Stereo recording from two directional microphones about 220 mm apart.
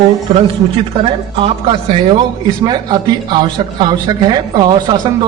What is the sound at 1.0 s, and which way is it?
Speech, 25° right (ahead or behind).